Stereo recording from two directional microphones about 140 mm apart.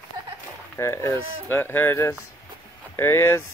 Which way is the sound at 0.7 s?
20° left (ahead or behind).